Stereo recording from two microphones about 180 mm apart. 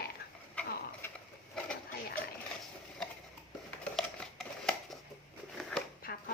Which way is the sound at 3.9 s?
5° left (ahead or behind).